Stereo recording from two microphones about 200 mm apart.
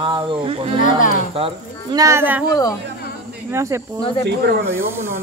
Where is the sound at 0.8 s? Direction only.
40° left (ahead or behind).